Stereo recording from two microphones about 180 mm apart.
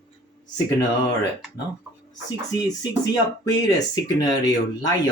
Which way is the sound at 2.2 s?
20° left (ahead or behind).